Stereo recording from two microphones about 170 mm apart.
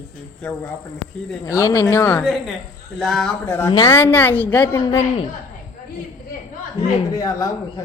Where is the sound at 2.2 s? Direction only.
Centre (ahead or behind).